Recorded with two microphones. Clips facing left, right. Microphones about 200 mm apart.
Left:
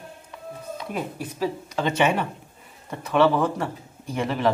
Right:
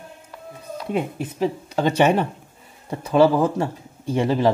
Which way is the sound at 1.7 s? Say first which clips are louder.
Right 5 dB; 40° right (ahead or behind).